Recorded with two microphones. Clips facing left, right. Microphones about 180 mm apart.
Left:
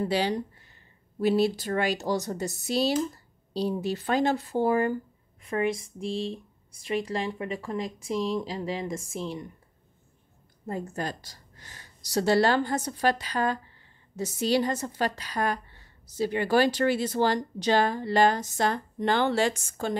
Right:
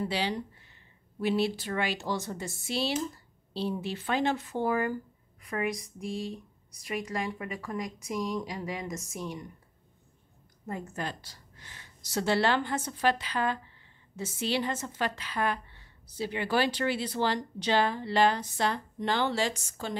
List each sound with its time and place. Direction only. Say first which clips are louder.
0.0 s a woman's voice: left 5 dB; 45° left (ahead or behind)
10.7 s a woman's voice: left 4 dB; 35° left (ahead or behind)